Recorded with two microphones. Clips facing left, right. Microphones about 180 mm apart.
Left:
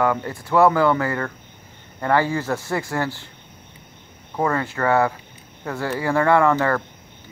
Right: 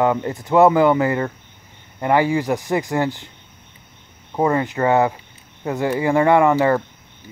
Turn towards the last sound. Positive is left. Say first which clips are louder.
# right 3 dB
turn(degrees=-15)  # may be behind; listen again after turning